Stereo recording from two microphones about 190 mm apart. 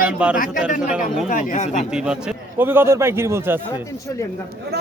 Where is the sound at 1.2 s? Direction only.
40° left (ahead or behind).